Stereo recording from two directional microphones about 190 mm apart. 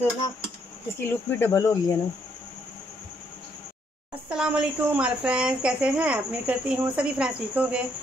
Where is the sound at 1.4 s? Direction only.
15° left (ahead or behind).